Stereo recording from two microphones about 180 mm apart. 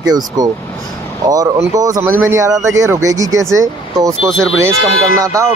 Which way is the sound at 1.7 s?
20° right (ahead or behind).